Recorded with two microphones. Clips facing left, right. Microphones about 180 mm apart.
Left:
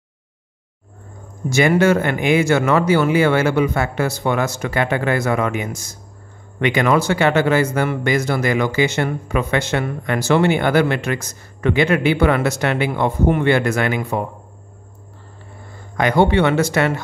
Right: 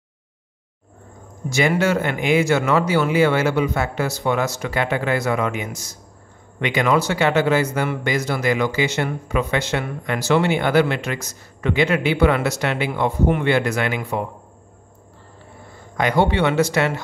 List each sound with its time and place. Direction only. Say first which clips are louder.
1.5 s speech: left 4 dB; 50° left (ahead or behind)
16.0 s speech: left 3 dB; 55° left (ahead or behind)